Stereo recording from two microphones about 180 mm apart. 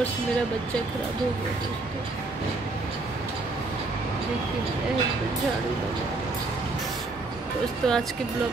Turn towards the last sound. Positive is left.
turn(degrees=5)  # may be behind; listen again after turning